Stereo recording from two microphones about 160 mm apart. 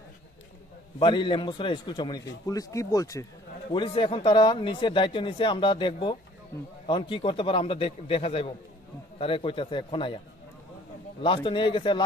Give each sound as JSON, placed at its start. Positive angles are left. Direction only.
{"t": 0.9, "sound": "a man's voice", "side_deg": 30}
{"t": 3.7, "sound": "speech", "side_deg": 30}
{"t": 11.2, "sound": "speech", "side_deg": 30}